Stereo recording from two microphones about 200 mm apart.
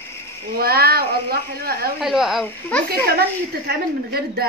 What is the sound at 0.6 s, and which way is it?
A woman's voice, 50° right (ahead or behind).